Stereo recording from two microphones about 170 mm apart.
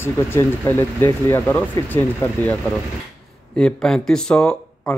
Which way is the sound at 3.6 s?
5° left (ahead or behind).